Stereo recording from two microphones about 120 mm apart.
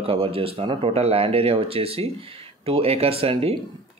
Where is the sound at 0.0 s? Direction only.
50° right (ahead or behind).